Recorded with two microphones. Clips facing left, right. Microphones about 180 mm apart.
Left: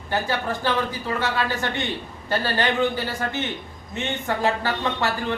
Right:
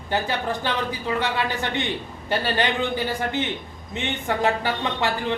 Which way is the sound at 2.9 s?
15° right (ahead or behind).